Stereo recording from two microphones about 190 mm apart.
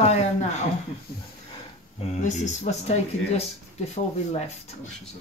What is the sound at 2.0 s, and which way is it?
Speech, 35° left (ahead or behind).